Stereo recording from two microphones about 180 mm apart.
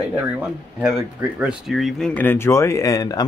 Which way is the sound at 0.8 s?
5° right (ahead or behind).